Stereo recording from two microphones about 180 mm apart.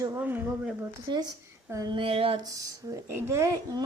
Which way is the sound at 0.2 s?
10° right (ahead or behind).